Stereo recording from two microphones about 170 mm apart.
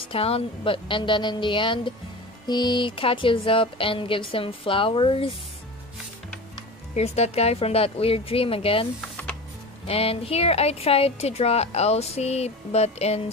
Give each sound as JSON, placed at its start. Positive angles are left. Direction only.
{"t": 0.1, "sound": "a woman's voice", "side_deg": 35}
{"t": 7.0, "sound": "a woman's voice", "side_deg": 40}
{"t": 9.1, "sound": "music", "side_deg": 5}
{"t": 9.8, "sound": "a woman's voice", "side_deg": 35}